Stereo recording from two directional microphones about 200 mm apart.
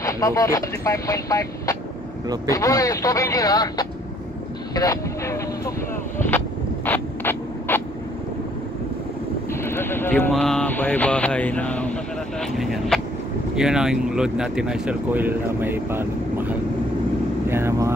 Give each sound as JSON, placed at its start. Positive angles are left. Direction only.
{"t": 0.0, "sound": "speech", "side_deg": 15}
{"t": 6.9, "sound": "mechanisms", "side_deg": 10}
{"t": 9.5, "sound": "a sound", "side_deg": 10}
{"t": 12.4, "sound": "speech", "side_deg": 0}